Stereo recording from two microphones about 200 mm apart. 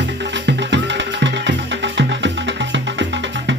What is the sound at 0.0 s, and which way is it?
Music, 60° right (ahead or behind).